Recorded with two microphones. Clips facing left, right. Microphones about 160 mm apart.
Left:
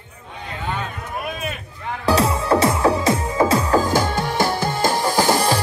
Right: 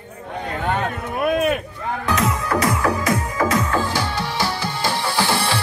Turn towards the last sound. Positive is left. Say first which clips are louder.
# left 4 dB
turn(degrees=45)  # may be behind; listen again after turning